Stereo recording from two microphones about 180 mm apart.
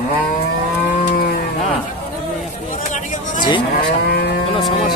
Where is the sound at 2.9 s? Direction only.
45° left (ahead or behind).